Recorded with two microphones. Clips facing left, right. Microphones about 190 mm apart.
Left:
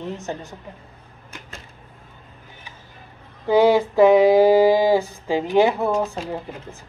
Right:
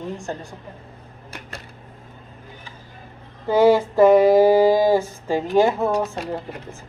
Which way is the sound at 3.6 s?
Centre (ahead or behind).